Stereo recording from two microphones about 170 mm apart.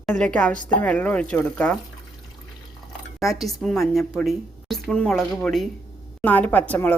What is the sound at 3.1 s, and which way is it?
A woman's voice, centre (ahead or behind).